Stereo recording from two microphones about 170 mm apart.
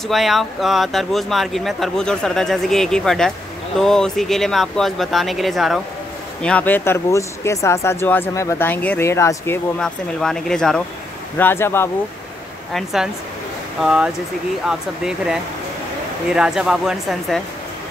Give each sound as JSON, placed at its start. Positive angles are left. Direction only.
{"t": 0.1, "sound": "speech", "side_deg": 0}
{"t": 9.8, "sound": "speech", "side_deg": 5}
{"t": 12.7, "sound": "speech", "side_deg": 0}
{"t": 16.3, "sound": "speech", "side_deg": -5}